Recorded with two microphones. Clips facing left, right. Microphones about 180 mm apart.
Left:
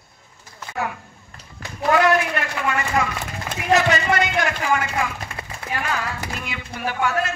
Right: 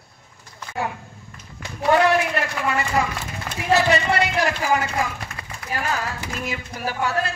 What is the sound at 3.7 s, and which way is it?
A man's voice, 30° right (ahead or behind).